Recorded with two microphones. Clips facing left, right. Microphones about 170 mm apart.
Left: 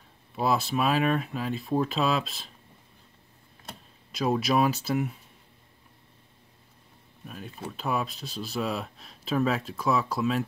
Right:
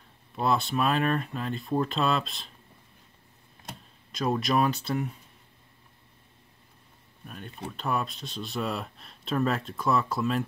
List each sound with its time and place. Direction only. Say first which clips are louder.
0.4 s speech: even; 5° left (ahead or behind)
4.1 s speech: left 1 dB; 5° left (ahead or behind)
7.2 s speech: left 1 dB; centre (ahead or behind)